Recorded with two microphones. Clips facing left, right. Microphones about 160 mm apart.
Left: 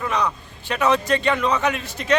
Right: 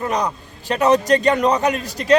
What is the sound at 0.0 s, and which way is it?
A man's voice, 40° right (ahead or behind).